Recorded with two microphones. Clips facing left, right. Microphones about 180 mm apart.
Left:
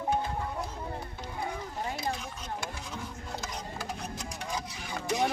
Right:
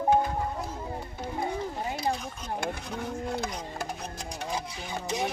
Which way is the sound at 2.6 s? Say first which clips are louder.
Right 5 dB; 60° right (ahead or behind).